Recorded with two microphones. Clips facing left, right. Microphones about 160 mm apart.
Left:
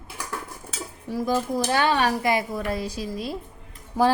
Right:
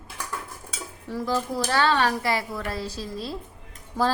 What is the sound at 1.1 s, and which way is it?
A woman's voice, 10° left (ahead or behind).